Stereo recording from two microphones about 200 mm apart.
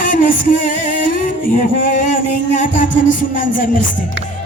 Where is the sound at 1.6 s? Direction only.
40° left (ahead or behind).